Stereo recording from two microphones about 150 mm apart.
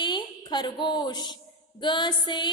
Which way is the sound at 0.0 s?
30° left (ahead or behind).